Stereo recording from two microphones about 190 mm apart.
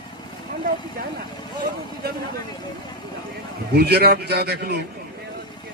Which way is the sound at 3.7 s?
55° right (ahead or behind).